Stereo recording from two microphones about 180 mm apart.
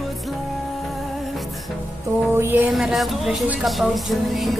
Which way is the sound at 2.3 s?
10° right (ahead or behind).